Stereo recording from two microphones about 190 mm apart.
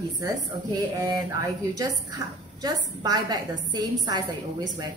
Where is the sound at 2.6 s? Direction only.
20° right (ahead or behind).